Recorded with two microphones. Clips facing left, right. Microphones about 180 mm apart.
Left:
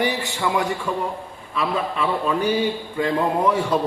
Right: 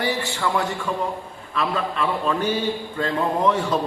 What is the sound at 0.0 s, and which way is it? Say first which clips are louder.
A man's voice: left 1 dB; 20° left (ahead or behind).